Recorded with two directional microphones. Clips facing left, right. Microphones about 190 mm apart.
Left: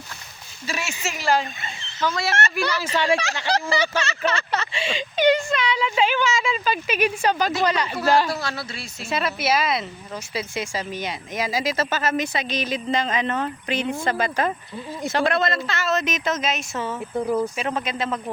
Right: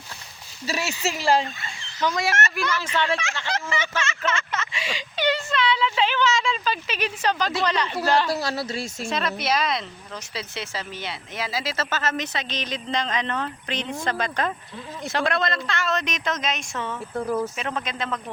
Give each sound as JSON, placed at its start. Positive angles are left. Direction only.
{"t": 0.6, "sound": "speech", "side_deg": -35}
{"t": 1.0, "sound": "fowl", "side_deg": -30}
{"t": 1.6, "sound": "a sound", "side_deg": 20}
{"t": 2.3, "sound": "speech", "side_deg": 35}
{"t": 8.3, "sound": "speech", "side_deg": -35}
{"t": 9.0, "sound": "speech", "side_deg": 5}